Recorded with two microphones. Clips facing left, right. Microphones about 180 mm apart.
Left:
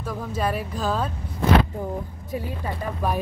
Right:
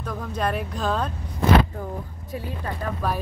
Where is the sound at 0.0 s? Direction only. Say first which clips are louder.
Even; 5° left (ahead or behind).